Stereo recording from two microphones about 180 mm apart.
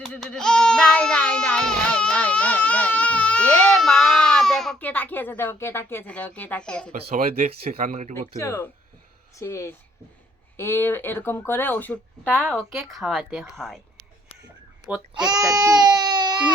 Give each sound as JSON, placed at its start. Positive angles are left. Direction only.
{"t": 0.0, "sound": "a sound", "side_deg": 5}
{"t": 7.1, "sound": "speech", "side_deg": -50}
{"t": 8.4, "sound": "speech", "side_deg": 15}
{"t": 15.1, "sound": "baby cry", "side_deg": -20}